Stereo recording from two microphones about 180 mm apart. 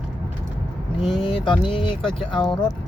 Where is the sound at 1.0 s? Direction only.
Centre (ahead or behind).